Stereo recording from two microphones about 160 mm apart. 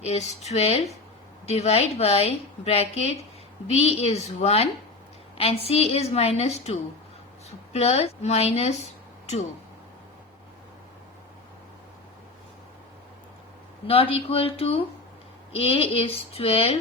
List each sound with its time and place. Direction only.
0.0 s a woman's voice: 45° left (ahead or behind)
13.8 s a woman's voice: 35° left (ahead or behind)